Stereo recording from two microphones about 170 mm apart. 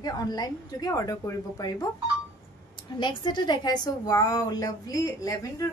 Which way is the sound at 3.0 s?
25° left (ahead or behind).